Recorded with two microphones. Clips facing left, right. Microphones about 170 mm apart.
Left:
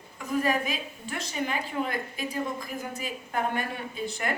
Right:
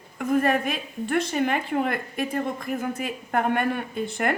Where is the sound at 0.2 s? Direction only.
55° right (ahead or behind).